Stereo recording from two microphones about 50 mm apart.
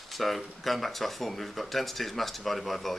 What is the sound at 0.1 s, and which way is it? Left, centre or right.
Speech, centre.